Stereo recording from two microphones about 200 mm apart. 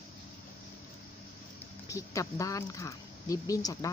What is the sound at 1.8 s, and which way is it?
Speech, 15° left (ahead or behind).